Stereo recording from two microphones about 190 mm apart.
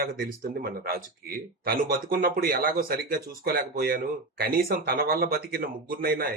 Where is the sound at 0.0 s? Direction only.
50° right (ahead or behind).